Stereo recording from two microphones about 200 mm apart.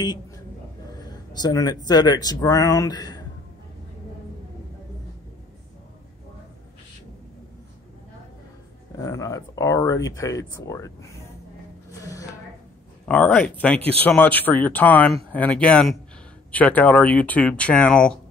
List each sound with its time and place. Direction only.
1.4 s speech: 20° left (ahead or behind)
8.9 s speech: 15° left (ahead or behind)
12.0 s a sound: 15° left (ahead or behind)
13.0 s speech: 10° left (ahead or behind)